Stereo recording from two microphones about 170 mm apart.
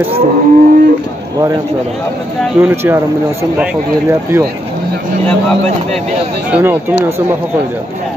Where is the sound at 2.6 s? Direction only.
15° right (ahead or behind).